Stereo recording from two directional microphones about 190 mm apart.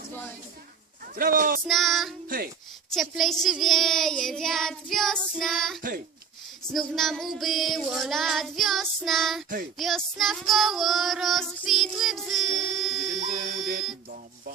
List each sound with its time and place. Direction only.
1.1 s speech: 50° right (ahead or behind)
1.6 s child singing: centre (ahead or behind)
13.2 s music: 50° right (ahead or behind)